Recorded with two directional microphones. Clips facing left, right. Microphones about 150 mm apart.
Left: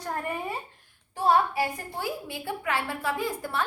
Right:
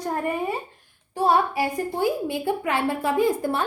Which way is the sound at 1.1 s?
10° right (ahead or behind).